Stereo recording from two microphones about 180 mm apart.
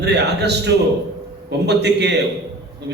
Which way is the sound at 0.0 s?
70° right (ahead or behind).